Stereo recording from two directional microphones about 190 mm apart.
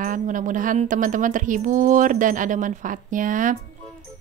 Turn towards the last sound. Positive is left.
turn(degrees=-45)  # may be behind; listen again after turning